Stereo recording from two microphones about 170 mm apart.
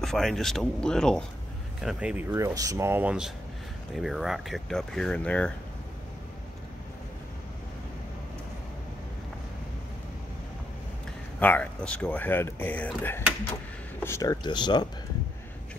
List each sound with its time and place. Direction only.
0.0 s speech: centre (ahead or behind)
11.3 s speech: 10° left (ahead or behind); by 14.9 s 25° left (ahead or behind)